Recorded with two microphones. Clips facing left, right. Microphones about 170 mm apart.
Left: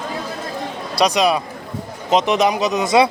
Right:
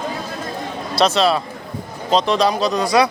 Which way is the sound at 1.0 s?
15° left (ahead or behind).